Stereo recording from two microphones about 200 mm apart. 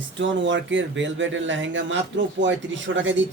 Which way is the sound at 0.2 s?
65° right (ahead or behind).